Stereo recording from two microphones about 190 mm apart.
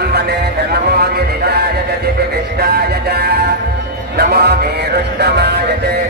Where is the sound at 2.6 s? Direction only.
55° right (ahead or behind).